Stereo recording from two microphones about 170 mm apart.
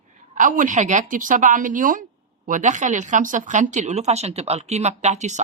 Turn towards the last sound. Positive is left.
turn(degrees=-45)  # may be behind; listen again after turning